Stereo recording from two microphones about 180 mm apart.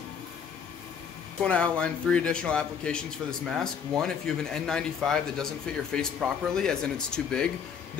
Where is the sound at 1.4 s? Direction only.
5° left (ahead or behind).